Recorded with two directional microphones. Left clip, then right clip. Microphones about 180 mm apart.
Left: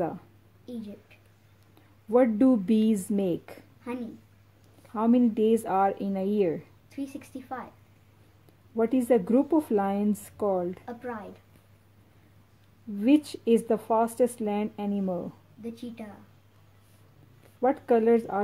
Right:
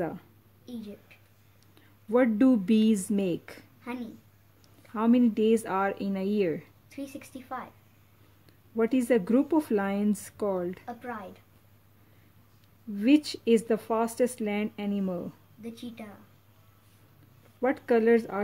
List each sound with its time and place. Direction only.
0.7 s a woman's voice: centre (ahead or behind)
1.8 s speech: 15° right (ahead or behind)
3.9 s a woman's voice: 5° right (ahead or behind)
4.9 s speech: 15° right (ahead or behind)
6.9 s a woman's voice: 5° right (ahead or behind)
8.7 s speech: 15° right (ahead or behind)
10.9 s a woman's voice: 5° right (ahead or behind)
12.9 s speech: 15° right (ahead or behind)
15.6 s a woman's voice: 5° right (ahead or behind)
17.6 s speech: 20° right (ahead or behind)